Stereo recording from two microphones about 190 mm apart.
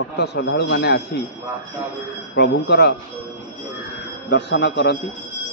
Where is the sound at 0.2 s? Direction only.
65° left (ahead or behind).